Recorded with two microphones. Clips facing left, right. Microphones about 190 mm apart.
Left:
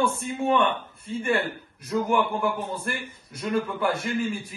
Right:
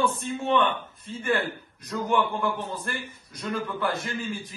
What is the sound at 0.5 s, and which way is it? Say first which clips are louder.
A man's voice: right 1 dB; 10° left (ahead or behind).